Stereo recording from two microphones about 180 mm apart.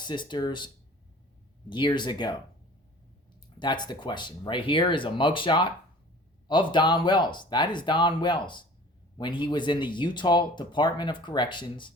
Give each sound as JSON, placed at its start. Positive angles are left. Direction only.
{"t": 0.0, "sound": "speech", "side_deg": 25}
{"t": 1.7, "sound": "speech", "side_deg": 25}
{"t": 3.6, "sound": "speech", "side_deg": 25}